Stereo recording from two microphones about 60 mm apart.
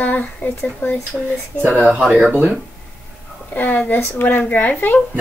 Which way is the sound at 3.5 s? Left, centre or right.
Left.